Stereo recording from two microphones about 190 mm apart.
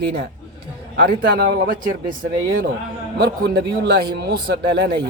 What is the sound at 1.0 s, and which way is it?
Speech, 55° right (ahead or behind).